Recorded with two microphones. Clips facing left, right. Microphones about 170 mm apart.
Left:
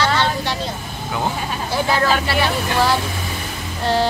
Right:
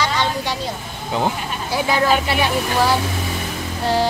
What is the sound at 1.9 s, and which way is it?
Music, 15° right (ahead or behind).